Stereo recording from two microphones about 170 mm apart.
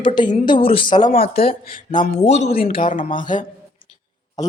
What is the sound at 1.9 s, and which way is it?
Speech, 30° left (ahead or behind).